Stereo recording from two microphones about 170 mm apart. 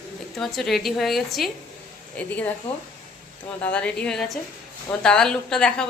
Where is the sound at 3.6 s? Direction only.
5° left (ahead or behind).